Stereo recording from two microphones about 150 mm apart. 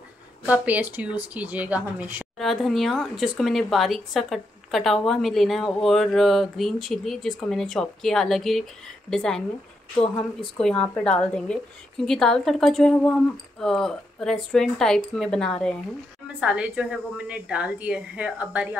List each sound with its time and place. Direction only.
0.5 s a woman's voice: 10° right (ahead or behind)
2.3 s speech: centre (ahead or behind)
16.3 s a woman's voice: 5° right (ahead or behind)